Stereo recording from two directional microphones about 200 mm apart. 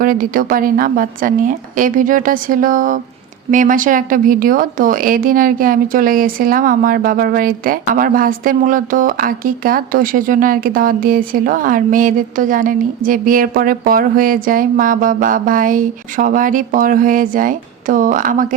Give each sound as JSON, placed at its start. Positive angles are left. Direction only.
{"t": 0.0, "sound": "speech", "side_deg": -45}